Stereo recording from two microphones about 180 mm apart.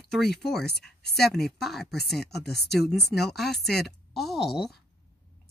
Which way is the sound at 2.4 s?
65° left (ahead or behind).